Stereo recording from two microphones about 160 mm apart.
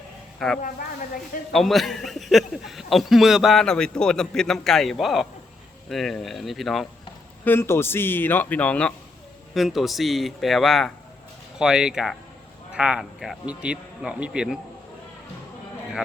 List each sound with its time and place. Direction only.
0.3 s a man's voice: 5° left (ahead or behind)
0.6 s speech: 60° left (ahead or behind)
1.5 s a man's voice: centre (ahead or behind)
7.4 s a man's voice: 15° left (ahead or behind); by 14.6 s 5° right (ahead or behind)